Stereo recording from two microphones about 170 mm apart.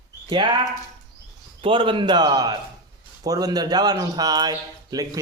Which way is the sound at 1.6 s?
30° right (ahead or behind).